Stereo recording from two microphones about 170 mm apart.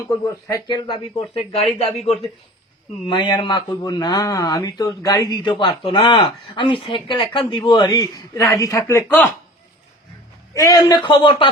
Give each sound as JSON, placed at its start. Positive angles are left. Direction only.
{"t": 0.3, "sound": "speech", "side_deg": 20}
{"t": 3.1, "sound": "speech", "side_deg": 25}
{"t": 10.5, "sound": "speech", "side_deg": 20}